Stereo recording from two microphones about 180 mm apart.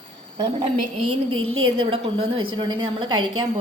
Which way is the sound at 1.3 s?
30° right (ahead or behind).